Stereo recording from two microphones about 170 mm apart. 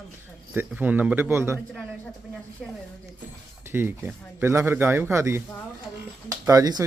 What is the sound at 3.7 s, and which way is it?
Speech, 15° right (ahead or behind).